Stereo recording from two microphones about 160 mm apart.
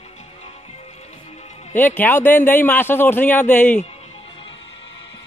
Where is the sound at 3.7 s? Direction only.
40° left (ahead or behind).